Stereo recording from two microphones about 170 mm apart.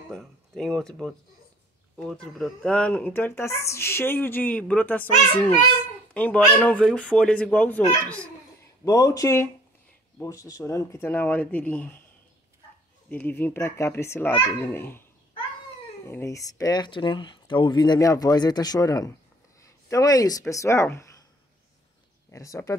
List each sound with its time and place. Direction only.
0.1 s speech: centre (ahead or behind)
2.3 s speech: 5° left (ahead or behind)
6.1 s speech: 10° left (ahead or behind)
13.1 s speech: 10° left (ahead or behind)
16.1 s speech: 15° left (ahead or behind)
22.3 s speech: 20° left (ahead or behind)